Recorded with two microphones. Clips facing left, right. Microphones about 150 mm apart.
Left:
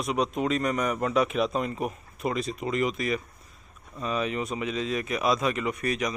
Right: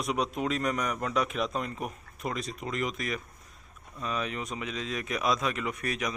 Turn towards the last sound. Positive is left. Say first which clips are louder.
# left 4 dB
turn(degrees=0)  # may be behind; listen again after turning